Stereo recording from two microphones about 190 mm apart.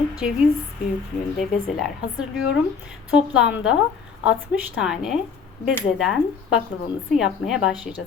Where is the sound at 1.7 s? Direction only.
Centre (ahead or behind).